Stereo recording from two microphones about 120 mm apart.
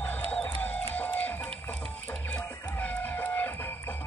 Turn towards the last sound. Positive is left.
turn(degrees=15)  # may be behind; listen again after turning